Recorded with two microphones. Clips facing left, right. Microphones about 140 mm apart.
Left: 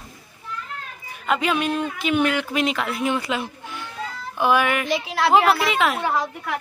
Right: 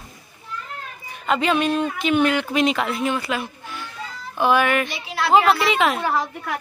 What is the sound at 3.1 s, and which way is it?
A woman's voice, 20° left (ahead or behind).